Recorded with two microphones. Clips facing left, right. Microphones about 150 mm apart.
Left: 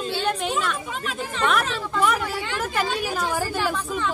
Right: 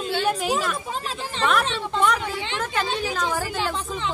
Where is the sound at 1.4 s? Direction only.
Centre (ahead or behind).